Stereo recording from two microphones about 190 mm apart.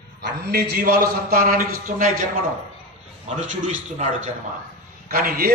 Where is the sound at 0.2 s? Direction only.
60° right (ahead or behind); by 4.0 s 40° right (ahead or behind).